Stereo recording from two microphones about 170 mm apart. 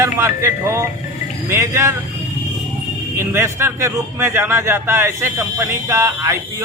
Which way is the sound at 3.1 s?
15° right (ahead or behind).